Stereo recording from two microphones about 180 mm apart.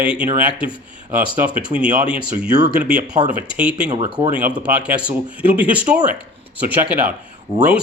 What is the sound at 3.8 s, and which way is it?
Speech, 40° right (ahead or behind).